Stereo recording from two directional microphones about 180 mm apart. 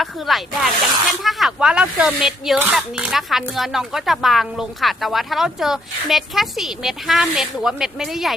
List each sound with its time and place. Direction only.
0.0 s speech: centre (ahead or behind)